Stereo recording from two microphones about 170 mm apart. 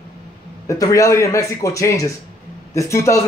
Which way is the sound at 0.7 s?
20° left (ahead or behind).